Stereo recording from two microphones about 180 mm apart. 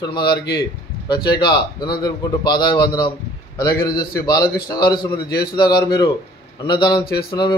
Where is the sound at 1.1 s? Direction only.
25° left (ahead or behind).